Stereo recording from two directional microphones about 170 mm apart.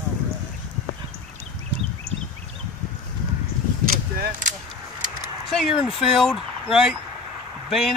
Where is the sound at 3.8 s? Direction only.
55° right (ahead or behind).